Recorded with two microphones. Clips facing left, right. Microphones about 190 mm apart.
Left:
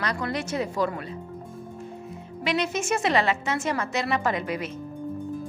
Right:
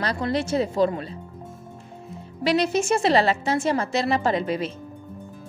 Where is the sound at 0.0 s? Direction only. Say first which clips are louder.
Right 4 dB; 30° right (ahead or behind).